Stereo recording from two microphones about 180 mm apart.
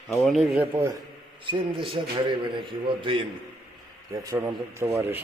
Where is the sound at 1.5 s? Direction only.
25° right (ahead or behind).